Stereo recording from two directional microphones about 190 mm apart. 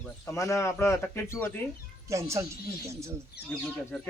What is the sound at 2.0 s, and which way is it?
Speech, 15° right (ahead or behind).